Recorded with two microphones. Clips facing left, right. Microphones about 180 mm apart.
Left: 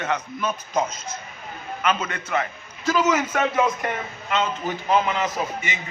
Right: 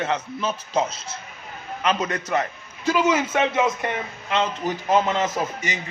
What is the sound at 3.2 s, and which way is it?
Speech, 25° right (ahead or behind).